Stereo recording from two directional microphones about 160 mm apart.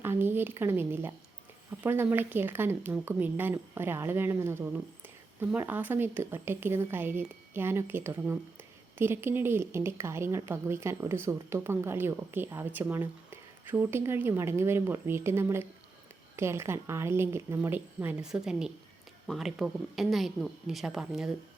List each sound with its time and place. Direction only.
0.0 s speech: 15° right (ahead or behind)